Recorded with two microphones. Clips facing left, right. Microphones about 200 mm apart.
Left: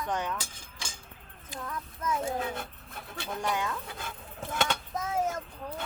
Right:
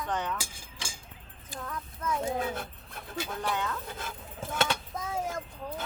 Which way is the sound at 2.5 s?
Centre (ahead or behind).